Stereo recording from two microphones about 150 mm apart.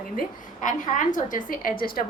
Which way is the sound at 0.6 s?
60° left (ahead or behind).